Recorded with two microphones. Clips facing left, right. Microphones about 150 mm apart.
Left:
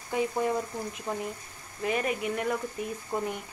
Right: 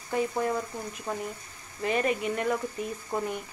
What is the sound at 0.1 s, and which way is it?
Speech, 10° left (ahead or behind).